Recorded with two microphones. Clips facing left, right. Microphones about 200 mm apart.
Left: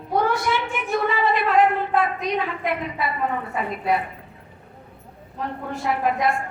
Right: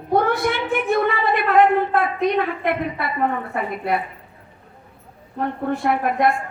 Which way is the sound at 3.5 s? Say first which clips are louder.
Right 2 dB; 60° right (ahead or behind).